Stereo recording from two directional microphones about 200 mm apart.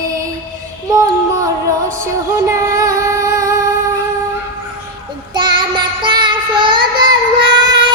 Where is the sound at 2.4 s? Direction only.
15° right (ahead or behind).